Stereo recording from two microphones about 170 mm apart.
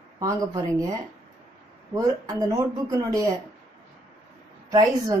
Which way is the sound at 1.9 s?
20° right (ahead or behind).